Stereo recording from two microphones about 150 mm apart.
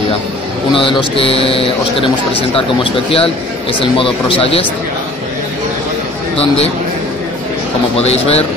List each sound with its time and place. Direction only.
0.7 s speech: 35° left (ahead or behind)
8.0 s speech: 45° left (ahead or behind)